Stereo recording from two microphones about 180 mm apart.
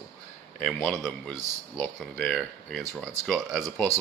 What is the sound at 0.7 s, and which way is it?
A man's voice, 5° left (ahead or behind).